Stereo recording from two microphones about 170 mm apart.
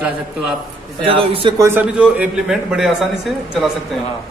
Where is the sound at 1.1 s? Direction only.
30° right (ahead or behind).